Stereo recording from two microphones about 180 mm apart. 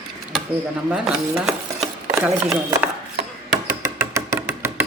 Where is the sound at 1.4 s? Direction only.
Centre (ahead or behind).